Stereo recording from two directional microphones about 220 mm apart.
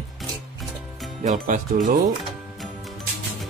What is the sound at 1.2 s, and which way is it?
Speech, 35° right (ahead or behind).